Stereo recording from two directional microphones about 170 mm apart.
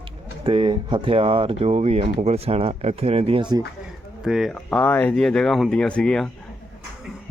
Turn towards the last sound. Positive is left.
turn(degrees=5)  # may be behind; listen again after turning